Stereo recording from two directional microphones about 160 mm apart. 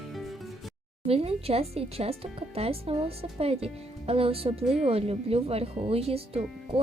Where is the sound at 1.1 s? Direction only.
40° right (ahead or behind).